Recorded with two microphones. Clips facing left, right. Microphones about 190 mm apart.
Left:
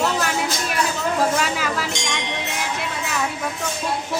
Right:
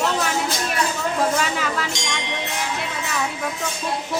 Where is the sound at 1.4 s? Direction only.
5° left (ahead or behind).